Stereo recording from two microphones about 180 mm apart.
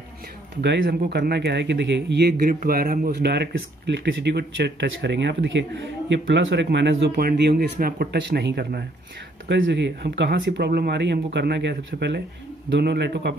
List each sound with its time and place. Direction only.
0.6 s speech: 65° right (ahead or behind)